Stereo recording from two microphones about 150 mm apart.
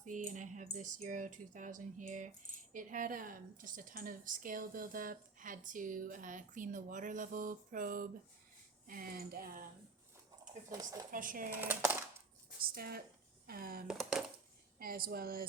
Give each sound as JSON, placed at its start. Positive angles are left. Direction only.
{"t": 0.0, "sound": "a woman's voice", "side_deg": -55}
{"t": 10.7, "sound": "speech", "side_deg": -25}
{"t": 11.1, "sound": "a woman's voice", "side_deg": -65}
{"t": 11.5, "sound": "speech", "side_deg": -15}
{"t": 12.6, "sound": "speech", "side_deg": -85}
{"t": 13.5, "sound": "speech", "side_deg": -75}
{"t": 13.8, "sound": "speech", "side_deg": -5}
{"t": 14.8, "sound": "speech", "side_deg": -75}